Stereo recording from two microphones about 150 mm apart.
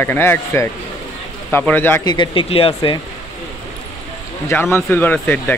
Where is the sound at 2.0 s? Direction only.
30° left (ahead or behind).